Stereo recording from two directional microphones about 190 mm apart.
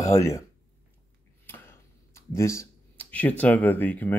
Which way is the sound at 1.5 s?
10° left (ahead or behind).